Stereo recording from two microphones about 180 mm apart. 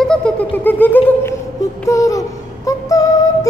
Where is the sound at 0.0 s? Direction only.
5° left (ahead or behind).